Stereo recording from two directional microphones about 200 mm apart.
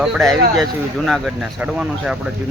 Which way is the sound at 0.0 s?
Centre (ahead or behind).